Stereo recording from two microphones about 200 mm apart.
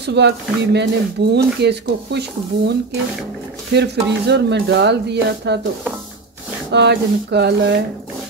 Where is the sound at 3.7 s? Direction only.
60° right (ahead or behind).